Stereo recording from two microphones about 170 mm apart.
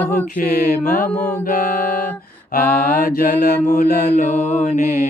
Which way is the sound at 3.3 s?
70° left (ahead or behind).